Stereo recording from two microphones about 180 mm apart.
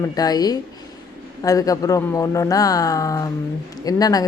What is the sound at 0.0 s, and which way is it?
A woman's voice, 20° left (ahead or behind).